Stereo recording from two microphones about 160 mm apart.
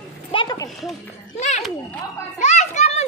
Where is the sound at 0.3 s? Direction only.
25° left (ahead or behind).